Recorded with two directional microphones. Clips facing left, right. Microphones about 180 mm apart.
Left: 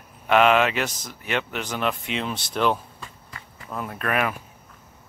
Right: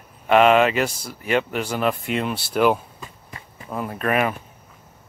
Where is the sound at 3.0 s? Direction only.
25° right (ahead or behind).